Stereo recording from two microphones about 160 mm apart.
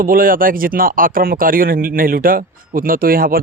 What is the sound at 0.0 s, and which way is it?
Speech, 60° right (ahead or behind).